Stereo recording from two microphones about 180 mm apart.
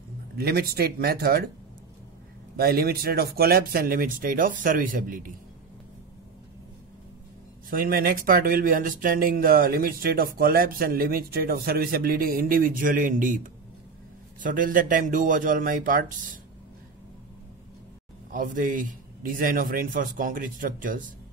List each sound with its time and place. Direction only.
0.4 s speech: 60° right (ahead or behind)
2.5 s speech: 55° right (ahead or behind)
7.7 s speech: 55° right (ahead or behind)
18.3 s speech: 45° right (ahead or behind)